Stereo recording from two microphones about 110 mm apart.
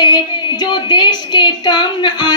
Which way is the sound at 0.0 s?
40° left (ahead or behind).